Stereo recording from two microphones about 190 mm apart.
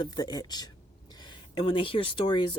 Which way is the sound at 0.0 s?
20° left (ahead or behind).